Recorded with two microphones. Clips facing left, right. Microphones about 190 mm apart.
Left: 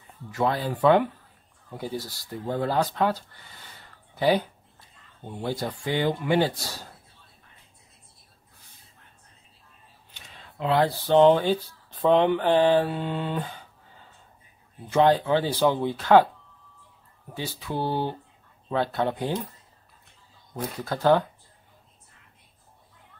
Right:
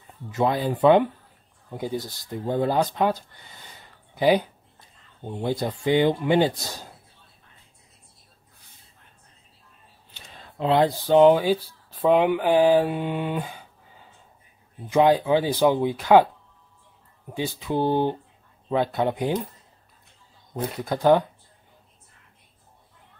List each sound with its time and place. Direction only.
0.3 s speech: 20° right (ahead or behind)
10.1 s a sound: 30° right (ahead or behind)
10.8 s speech: 15° right (ahead or behind)
17.3 s speech: 20° right (ahead or behind)
20.5 s speech: 15° right (ahead or behind)